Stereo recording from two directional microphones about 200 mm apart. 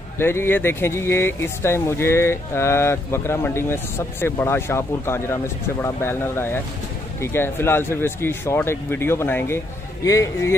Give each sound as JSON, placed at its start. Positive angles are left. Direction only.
{"t": 0.2, "sound": "speech", "side_deg": 10}